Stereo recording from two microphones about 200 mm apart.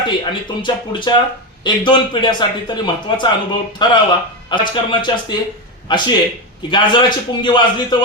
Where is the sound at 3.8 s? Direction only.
20° left (ahead or behind).